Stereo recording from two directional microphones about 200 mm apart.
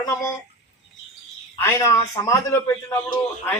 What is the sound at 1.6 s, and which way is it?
Speech, 15° left (ahead or behind).